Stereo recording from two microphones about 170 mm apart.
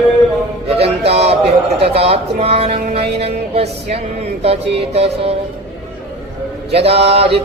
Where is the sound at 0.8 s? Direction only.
35° right (ahead or behind).